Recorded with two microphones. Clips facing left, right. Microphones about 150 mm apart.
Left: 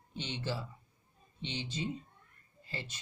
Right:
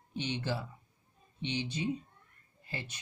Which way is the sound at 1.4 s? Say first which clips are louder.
Right 5 dB; 15° right (ahead or behind).